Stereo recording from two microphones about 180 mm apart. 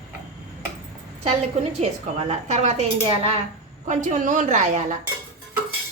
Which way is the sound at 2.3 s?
40° right (ahead or behind).